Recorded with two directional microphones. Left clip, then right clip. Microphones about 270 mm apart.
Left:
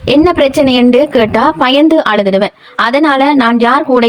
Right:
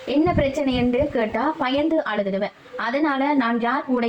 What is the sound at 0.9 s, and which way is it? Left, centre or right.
Speech, left.